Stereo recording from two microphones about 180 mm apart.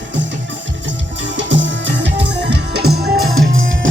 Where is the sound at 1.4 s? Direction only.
90° right; by 2.9 s 70° right (ahead or behind).